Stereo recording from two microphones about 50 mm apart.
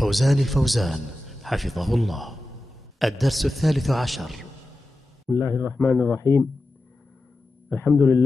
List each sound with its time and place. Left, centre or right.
0.0 s a man's voice: centre
5.3 s speech: left
5.7 s speech: left
7.7 s speech: left